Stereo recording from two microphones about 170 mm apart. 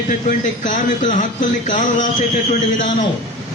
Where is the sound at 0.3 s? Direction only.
50° left (ahead or behind).